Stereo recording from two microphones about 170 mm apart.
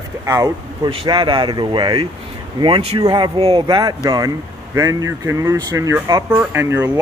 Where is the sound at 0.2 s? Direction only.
20° right (ahead or behind).